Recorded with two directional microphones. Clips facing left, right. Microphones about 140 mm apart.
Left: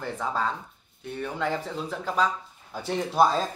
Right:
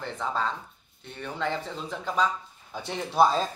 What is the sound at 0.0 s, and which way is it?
Speech, 10° left (ahead or behind).